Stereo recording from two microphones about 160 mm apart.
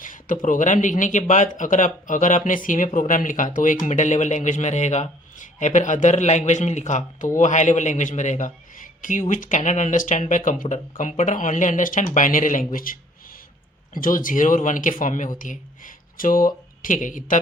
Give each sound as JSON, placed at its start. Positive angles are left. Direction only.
{"t": 0.0, "sound": "a man's voice", "side_deg": 55}